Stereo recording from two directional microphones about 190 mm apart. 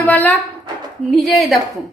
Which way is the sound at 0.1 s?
10° left (ahead or behind).